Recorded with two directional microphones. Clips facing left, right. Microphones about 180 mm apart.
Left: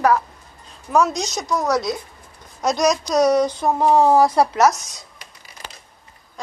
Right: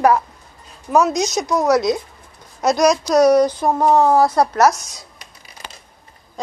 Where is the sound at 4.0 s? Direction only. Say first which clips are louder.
Left 1 dB; 15° left (ahead or behind).